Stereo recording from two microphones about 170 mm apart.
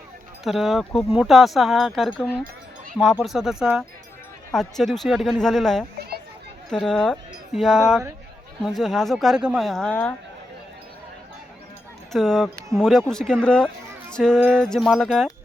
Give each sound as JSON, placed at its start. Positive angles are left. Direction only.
{"t": 0.4, "sound": "speech", "side_deg": 0}
{"t": 12.1, "sound": "speech", "side_deg": 0}